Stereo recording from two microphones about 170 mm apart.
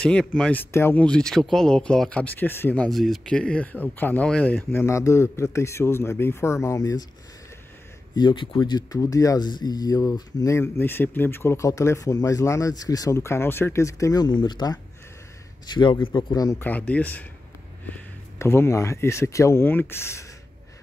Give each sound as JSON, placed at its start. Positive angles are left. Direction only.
{"t": 0.0, "sound": "speech", "side_deg": 5}
{"t": 8.2, "sound": "speech", "side_deg": 25}
{"t": 16.5, "sound": "speech", "side_deg": 10}